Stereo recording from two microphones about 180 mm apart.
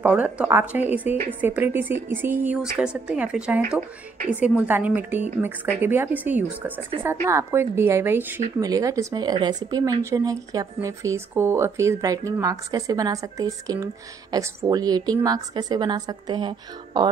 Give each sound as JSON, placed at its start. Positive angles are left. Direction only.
{"t": 0.0, "sound": "a woman's voice", "side_deg": -10}